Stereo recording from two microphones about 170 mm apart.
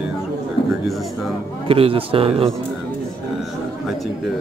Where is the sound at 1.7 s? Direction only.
35° right (ahead or behind).